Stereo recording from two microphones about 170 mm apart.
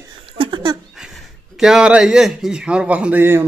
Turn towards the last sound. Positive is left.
turn(degrees=-10)  # may be behind; listen again after turning